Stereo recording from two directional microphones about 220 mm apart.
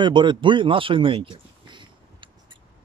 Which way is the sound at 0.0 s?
20° right (ahead or behind).